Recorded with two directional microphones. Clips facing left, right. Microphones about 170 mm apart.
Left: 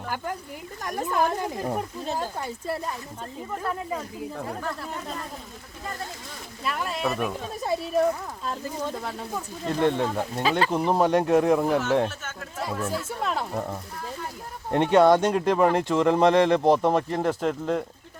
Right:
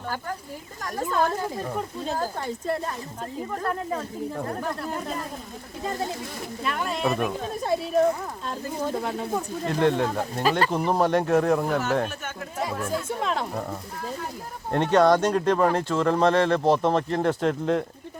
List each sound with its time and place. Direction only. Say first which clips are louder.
1.1 s speech: even; 15° left (ahead or behind)
2.7 s speech: right 2 dB; 5° left (ahead or behind)
5.8 s speech: right 6 dB; 20° right (ahead or behind)
6.6 s speech: right 1 dB; centre (ahead or behind)
10.7 s speech: left 1 dB; 10° left (ahead or behind)
12.0 s speech: even; 10° right (ahead or behind)
14.7 s speech: left 1 dB; 15° left (ahead or behind)